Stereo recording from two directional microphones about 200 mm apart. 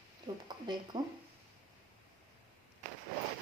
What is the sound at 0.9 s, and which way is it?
Speech, 25° right (ahead or behind).